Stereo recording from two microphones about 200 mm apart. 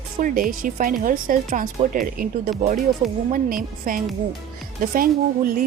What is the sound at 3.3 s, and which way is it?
Speech, 45° right (ahead or behind).